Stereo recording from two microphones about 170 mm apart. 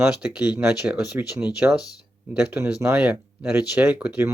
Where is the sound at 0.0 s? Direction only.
10° right (ahead or behind).